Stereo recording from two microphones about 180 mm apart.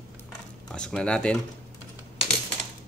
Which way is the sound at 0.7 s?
5° left (ahead or behind).